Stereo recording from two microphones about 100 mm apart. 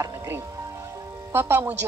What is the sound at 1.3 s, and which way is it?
Speech, 20° right (ahead or behind).